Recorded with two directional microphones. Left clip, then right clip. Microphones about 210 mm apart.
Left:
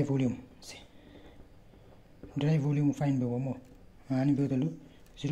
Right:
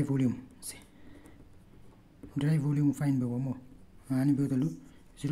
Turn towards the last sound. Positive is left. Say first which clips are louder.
# even
turn(degrees=-10)  # may be behind; listen again after turning